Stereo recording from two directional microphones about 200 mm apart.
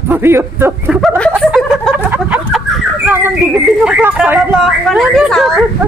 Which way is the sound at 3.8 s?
5° right (ahead or behind).